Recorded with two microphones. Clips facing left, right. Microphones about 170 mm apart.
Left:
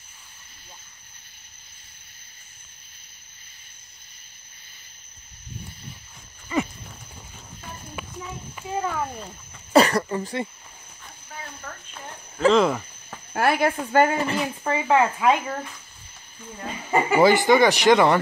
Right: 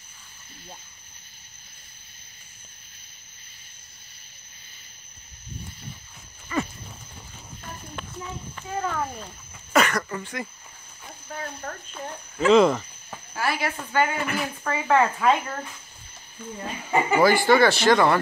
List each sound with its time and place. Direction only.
6.5 s horse: 20° left (ahead or behind)
8.0 s a sound: 10° left (ahead or behind)
8.5 s speech: 10° left (ahead or behind)
9.7 s speech: 30° left (ahead or behind)
11.6 s speech: 40° right (ahead or behind)
12.4 s speech: centre (ahead or behind)
13.3 s speech: 55° left (ahead or behind)
14.2 s speech: 25° left (ahead or behind)
17.2 s speech: 20° left (ahead or behind)